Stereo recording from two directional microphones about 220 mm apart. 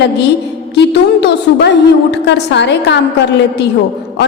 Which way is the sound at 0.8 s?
50° left (ahead or behind).